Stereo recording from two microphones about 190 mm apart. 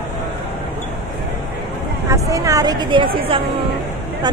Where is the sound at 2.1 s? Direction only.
15° right (ahead or behind).